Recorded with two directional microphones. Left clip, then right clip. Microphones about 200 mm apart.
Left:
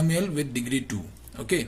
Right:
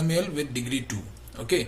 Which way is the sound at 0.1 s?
40° left (ahead or behind).